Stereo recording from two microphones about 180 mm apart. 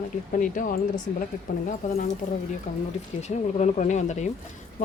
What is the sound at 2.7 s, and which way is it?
A woman's voice, 40° left (ahead or behind).